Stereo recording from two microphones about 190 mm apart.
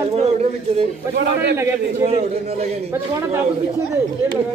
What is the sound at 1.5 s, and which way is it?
Speech, 15° right (ahead or behind).